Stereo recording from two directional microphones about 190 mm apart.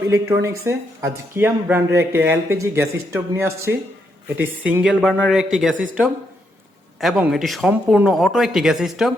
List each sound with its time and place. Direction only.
0.1 s speech: 15° right (ahead or behind)
7.0 s speech: centre (ahead or behind)